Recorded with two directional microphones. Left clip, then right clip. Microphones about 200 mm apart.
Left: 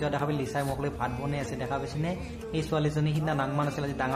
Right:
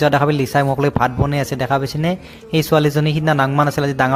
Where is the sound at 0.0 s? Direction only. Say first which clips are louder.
Right 15 dB; 45° right (ahead or behind).